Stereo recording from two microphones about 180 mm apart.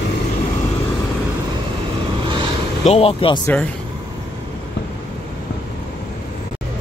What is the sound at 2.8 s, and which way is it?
Speech, 35° left (ahead or behind).